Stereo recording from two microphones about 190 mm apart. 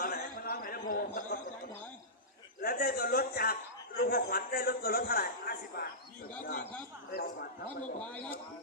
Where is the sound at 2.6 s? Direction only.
50° left (ahead or behind).